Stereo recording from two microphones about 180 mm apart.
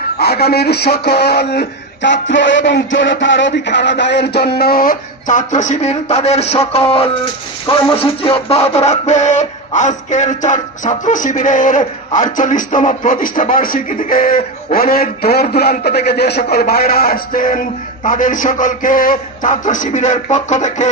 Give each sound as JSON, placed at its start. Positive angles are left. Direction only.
{"t": 0.2, "sound": "a man's voice", "side_deg": 60}